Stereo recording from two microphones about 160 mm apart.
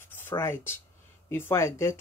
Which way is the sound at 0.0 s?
15° left (ahead or behind).